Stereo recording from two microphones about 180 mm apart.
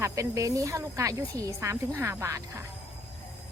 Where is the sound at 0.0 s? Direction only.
15° right (ahead or behind).